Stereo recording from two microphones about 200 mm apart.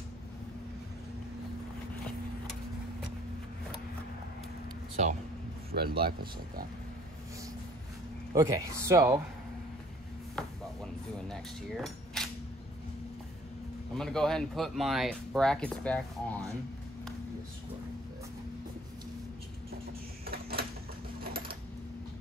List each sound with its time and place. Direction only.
5.0 s speech: 35° right (ahead or behind)
5.7 s speech: 50° right (ahead or behind)
8.4 s speech: 15° right (ahead or behind)
10.3 s cutlery: centre (ahead or behind)
13.9 s speech: 5° left (ahead or behind)
20.2 s a sound: 50° right (ahead or behind)
21.2 s sewing machine: 50° right (ahead or behind)